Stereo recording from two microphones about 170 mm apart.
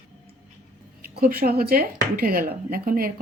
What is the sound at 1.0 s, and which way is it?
Speech, 65° right (ahead or behind).